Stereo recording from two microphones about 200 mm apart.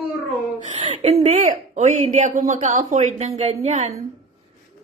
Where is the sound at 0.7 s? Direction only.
30° right (ahead or behind).